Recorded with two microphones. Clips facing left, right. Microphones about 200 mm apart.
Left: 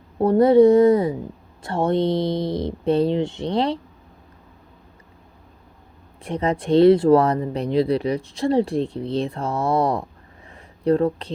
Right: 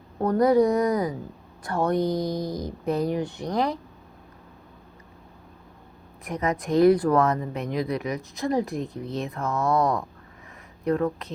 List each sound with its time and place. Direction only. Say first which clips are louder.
0.2 s speech: left 6 dB; 30° left (ahead or behind)
6.2 s speech: left 4 dB; 30° left (ahead or behind)